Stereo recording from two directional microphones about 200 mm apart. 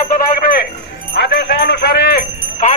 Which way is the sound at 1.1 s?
60° left (ahead or behind).